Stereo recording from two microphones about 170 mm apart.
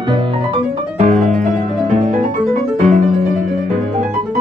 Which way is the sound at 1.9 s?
45° right (ahead or behind).